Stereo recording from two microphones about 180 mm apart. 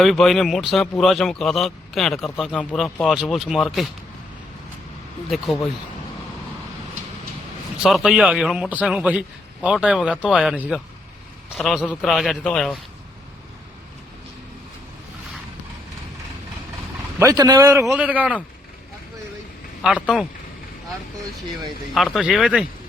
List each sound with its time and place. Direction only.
0.0 s speech: centre (ahead or behind)
7.8 s speech: centre (ahead or behind)
17.2 s a man's voice: 20° right (ahead or behind)
21.9 s speech: centre (ahead or behind)